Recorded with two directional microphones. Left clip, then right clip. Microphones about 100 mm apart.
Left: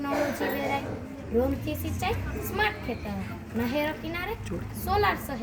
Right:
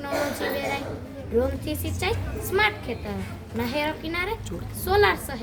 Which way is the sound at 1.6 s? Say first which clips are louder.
Right 3 dB; 35° right (ahead or behind).